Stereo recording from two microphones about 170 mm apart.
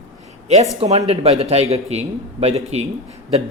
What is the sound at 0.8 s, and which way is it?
A man's voice, 40° right (ahead or behind).